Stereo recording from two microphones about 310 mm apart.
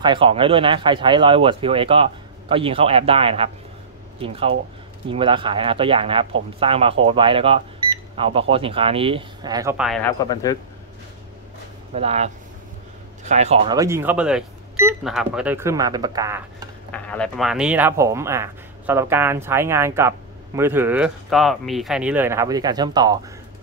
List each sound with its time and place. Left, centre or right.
0.0 s speech: centre
10.2 s speech: centre
11.9 s speech: centre
16.9 s speech: centre